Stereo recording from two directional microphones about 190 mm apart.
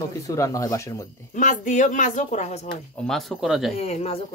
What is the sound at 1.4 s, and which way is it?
Speech, 40° left (ahead or behind).